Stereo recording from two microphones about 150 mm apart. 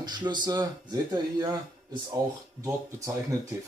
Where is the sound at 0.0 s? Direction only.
30° right (ahead or behind).